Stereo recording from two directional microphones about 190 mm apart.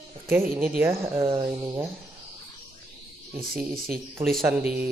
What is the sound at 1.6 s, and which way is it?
Speech, 15° right (ahead or behind).